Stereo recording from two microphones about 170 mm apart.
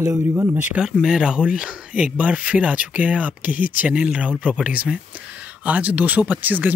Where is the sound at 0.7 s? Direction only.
5° right (ahead or behind).